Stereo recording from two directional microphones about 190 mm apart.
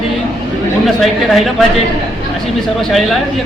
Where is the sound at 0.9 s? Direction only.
Centre (ahead or behind).